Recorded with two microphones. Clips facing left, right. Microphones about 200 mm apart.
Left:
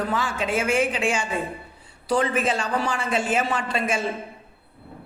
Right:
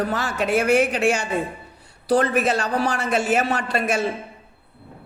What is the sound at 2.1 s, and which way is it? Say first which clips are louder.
A woman's voice: right 3 dB; 70° right (ahead or behind).